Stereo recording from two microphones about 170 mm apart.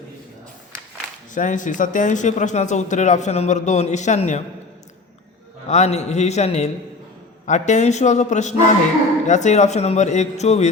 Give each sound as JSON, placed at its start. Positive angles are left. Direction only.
{"t": 1.3, "sound": "speech", "side_deg": 50}
{"t": 5.6, "sound": "a man's voice", "side_deg": 40}